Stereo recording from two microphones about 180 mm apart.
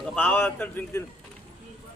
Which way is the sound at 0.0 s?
10° left (ahead or behind).